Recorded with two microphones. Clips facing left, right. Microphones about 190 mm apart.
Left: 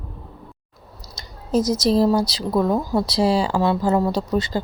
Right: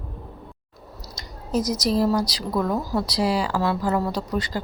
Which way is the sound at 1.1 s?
25° left (ahead or behind).